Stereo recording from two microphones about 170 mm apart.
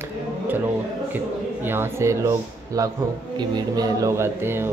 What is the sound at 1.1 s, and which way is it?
Speech, 10° right (ahead or behind).